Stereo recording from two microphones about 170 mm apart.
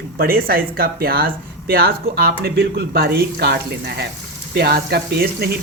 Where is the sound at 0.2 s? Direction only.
60° right (ahead or behind).